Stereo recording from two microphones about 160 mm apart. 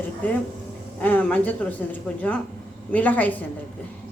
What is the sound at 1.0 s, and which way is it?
Speech, 10° left (ahead or behind).